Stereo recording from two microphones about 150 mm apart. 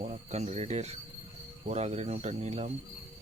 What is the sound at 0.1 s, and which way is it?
Speech, 45° right (ahead or behind).